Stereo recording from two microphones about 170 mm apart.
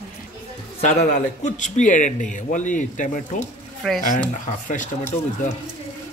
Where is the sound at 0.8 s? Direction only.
45° left (ahead or behind).